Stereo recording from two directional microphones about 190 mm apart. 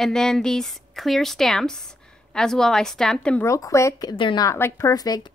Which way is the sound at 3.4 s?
15° left (ahead or behind).